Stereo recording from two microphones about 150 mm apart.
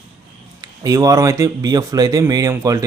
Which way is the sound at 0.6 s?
25° right (ahead or behind).